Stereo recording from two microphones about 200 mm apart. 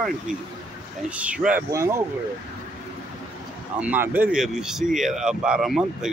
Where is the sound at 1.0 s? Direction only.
5° right (ahead or behind).